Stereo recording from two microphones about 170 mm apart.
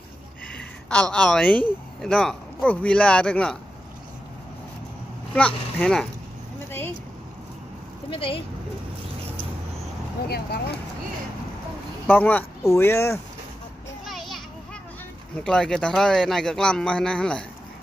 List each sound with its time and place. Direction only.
0.6 s a man's voice: 5° left (ahead or behind)
5.3 s a man's voice: 5° left (ahead or behind)
8.1 s speech: 30° left (ahead or behind)
10.2 s speech: 70° left (ahead or behind)
12.1 s speech: 10° left (ahead or behind)
14.0 s children playing: centre (ahead or behind)
15.3 s a man's voice: 5° left (ahead or behind)